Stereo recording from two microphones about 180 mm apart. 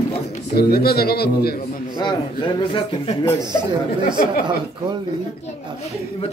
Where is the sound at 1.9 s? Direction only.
25° left (ahead or behind).